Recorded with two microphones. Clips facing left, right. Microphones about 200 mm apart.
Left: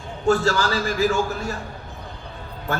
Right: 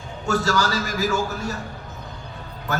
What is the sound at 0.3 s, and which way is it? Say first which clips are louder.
A man's voice: left 3 dB; 40° right (ahead or behind).